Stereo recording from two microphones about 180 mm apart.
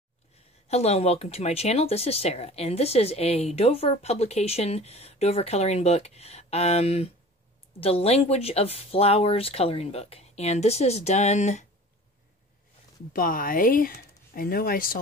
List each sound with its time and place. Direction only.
0.7 s speech: 35° left (ahead or behind)
13.1 s speech: 50° left (ahead or behind)